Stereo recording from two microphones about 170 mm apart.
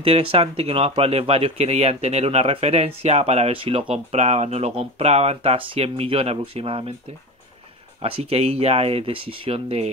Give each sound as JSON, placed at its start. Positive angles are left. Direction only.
{"t": 0.0, "sound": "speech", "side_deg": -35}
{"t": 8.0, "sound": "speech", "side_deg": -35}